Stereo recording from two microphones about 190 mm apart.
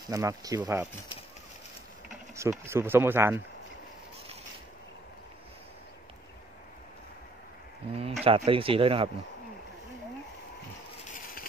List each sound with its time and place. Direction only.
0.0 s speech: 15° right (ahead or behind)
2.3 s speech: 15° right (ahead or behind)
8.0 s speech: 30° right (ahead or behind)